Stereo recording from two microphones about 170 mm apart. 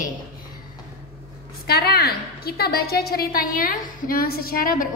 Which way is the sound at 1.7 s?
65° left (ahead or behind).